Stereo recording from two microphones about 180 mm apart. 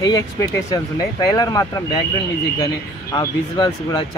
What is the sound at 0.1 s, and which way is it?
Speech, 20° left (ahead or behind).